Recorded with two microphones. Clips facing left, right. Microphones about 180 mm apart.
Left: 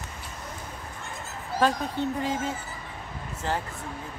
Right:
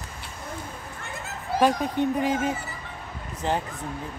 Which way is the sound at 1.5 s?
15° right (ahead or behind).